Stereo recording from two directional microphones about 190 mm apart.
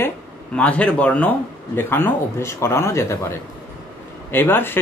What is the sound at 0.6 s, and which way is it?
Speech, 5° left (ahead or behind).